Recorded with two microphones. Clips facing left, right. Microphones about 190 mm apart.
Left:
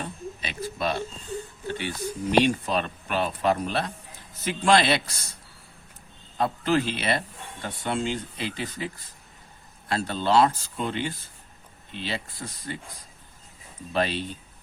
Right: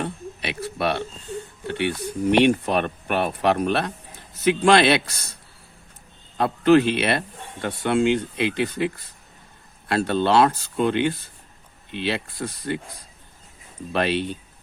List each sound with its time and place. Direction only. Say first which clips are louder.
0.0 s a sound: right 5 dB; 70° right (ahead or behind)
1.6 s a man's voice: right 7 dB; 65° right (ahead or behind)
6.3 s a man's voice: right 8 dB; 65° right (ahead or behind)
9.9 s a man's voice: right 4 dB; 65° right (ahead or behind)
13.9 s speech: right 4 dB; 65° right (ahead or behind)